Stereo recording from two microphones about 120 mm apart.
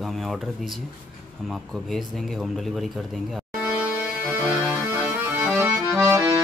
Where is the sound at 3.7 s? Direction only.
10° right (ahead or behind).